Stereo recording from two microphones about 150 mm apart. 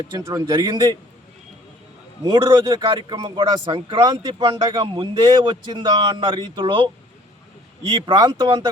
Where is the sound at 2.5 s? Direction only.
20° right (ahead or behind).